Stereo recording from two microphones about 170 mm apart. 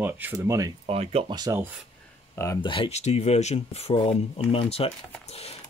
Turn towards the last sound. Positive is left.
turn(degrees=35)  # may be behind; listen again after turning